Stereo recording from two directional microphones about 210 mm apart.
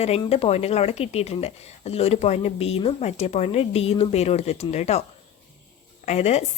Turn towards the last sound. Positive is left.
turn(degrees=30)  # may be behind; listen again after turning